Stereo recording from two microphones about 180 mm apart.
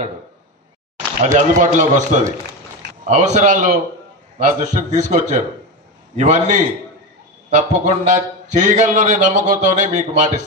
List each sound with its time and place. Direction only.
1.2 s a man's voice: 45° right (ahead or behind)